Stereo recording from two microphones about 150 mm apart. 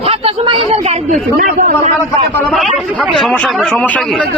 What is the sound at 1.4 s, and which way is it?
Speech, 75° right (ahead or behind).